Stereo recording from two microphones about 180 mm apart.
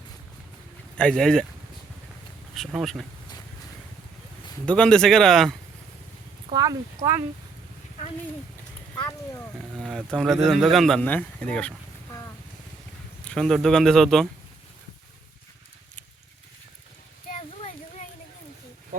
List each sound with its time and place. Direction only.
0.9 s speech: 5° left (ahead or behind)
2.6 s speech: centre (ahead or behind)
4.6 s speech: 5° left (ahead or behind)
6.5 s speech: 20° right (ahead or behind)
9.0 s a sound: 15° left (ahead or behind)
9.7 s speech: centre (ahead or behind)
13.2 s speech: 5° left (ahead or behind)
17.6 s a sound: 40° left (ahead or behind)